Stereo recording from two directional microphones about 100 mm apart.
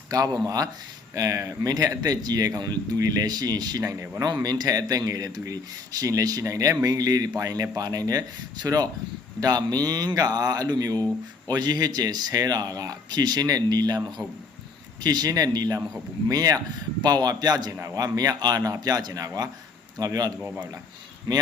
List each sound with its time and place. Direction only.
0.1 s a man's voice: 40° right (ahead or behind)